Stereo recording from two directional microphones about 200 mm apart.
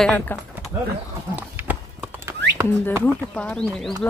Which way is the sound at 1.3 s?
10° right (ahead or behind).